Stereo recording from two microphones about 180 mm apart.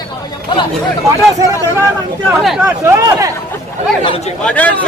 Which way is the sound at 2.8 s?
15° right (ahead or behind).